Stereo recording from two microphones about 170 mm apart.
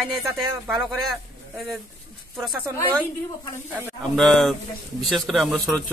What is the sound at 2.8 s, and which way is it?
Speech, 10° left (ahead or behind).